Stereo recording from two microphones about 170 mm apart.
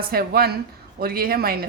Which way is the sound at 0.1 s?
65° right (ahead or behind).